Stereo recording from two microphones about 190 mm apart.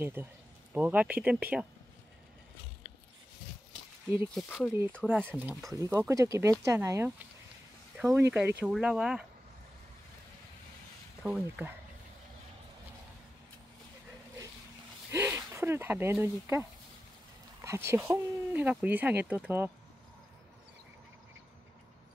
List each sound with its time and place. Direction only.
0.0 s speech: 10° right (ahead or behind)
4.3 s speech: centre (ahead or behind)
5.8 s speech: 15° right (ahead or behind)
11.2 s speech: 5° right (ahead or behind)
15.0 s speech: 15° right (ahead or behind)
17.6 s speech: 15° right (ahead or behind)